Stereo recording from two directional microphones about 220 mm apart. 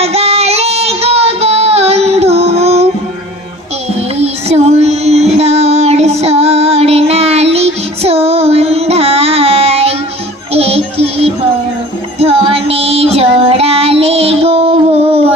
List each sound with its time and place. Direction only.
0.0 s child singing: 30° right (ahead or behind)
4.2 s child singing: 30° right (ahead or behind)
10.5 s music: 25° right (ahead or behind)
12.2 s child singing: 25° right (ahead or behind)